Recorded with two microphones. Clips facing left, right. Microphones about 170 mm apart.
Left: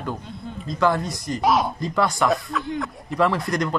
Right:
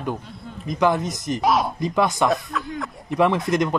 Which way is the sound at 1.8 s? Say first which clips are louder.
Right 2 dB; 20° right (ahead or behind).